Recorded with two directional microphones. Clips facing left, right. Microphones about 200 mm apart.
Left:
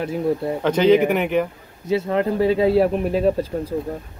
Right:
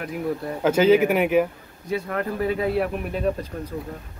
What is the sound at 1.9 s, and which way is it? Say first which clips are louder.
Speech: left 6 dB; 25° left (ahead or behind).